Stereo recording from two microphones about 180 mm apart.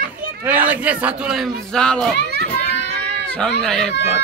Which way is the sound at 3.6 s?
5° left (ahead or behind).